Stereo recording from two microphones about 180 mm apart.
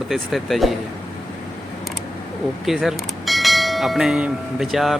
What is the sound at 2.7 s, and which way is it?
Speech, centre (ahead or behind).